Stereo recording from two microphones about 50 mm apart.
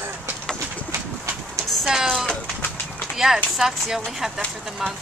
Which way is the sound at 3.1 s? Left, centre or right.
Centre.